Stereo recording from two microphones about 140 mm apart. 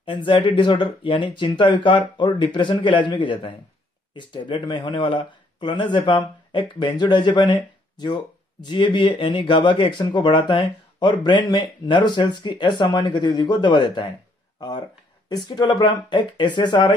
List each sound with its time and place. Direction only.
0.0 s speech: 40° left (ahead or behind)
15.2 s speech: 30° left (ahead or behind)